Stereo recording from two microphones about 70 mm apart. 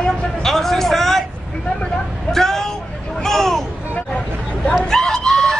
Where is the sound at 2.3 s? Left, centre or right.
Centre.